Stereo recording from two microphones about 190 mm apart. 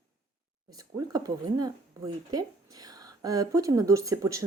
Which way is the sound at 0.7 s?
20° right (ahead or behind).